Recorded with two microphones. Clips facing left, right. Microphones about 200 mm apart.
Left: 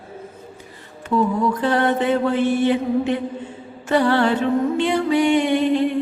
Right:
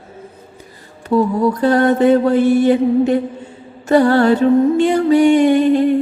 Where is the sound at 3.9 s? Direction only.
40° right (ahead or behind).